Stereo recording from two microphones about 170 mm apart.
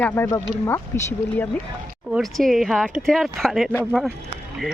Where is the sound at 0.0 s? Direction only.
15° left (ahead or behind).